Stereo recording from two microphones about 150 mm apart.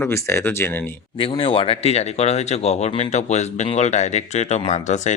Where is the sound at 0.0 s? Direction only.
20° left (ahead or behind).